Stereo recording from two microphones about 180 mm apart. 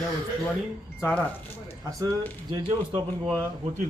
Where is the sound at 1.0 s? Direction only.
10° left (ahead or behind).